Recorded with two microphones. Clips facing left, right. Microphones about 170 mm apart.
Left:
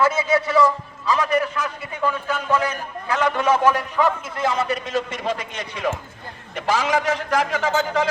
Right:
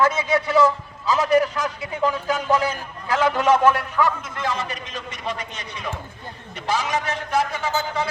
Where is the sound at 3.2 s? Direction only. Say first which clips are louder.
Right 2 dB; 5° right (ahead or behind).